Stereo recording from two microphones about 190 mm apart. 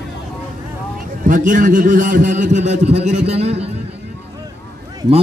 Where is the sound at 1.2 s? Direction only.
45° right (ahead or behind).